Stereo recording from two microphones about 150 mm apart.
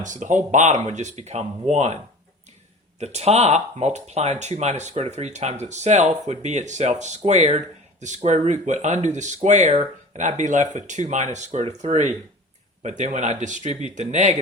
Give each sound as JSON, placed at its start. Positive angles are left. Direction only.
{"t": 0.0, "sound": "speech", "side_deg": -55}
{"t": 3.0, "sound": "speech", "side_deg": -45}